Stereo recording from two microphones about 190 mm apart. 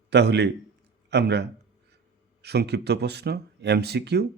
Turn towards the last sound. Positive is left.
turn(degrees=-60)  # may be behind; listen again after turning